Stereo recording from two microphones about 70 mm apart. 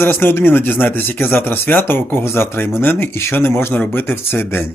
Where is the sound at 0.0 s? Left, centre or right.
Left.